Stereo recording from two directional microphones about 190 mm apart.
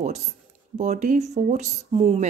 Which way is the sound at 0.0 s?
35° right (ahead or behind).